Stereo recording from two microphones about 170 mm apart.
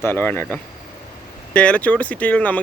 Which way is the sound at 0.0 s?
10° left (ahead or behind).